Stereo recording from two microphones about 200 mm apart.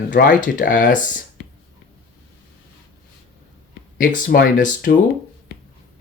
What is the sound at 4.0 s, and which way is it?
Speech, 50° left (ahead or behind).